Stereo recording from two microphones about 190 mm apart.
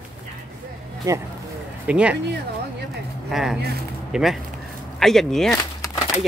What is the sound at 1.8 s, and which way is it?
Speech, 5° right (ahead or behind).